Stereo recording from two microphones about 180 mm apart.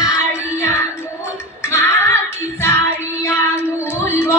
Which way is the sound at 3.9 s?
15° left (ahead or behind).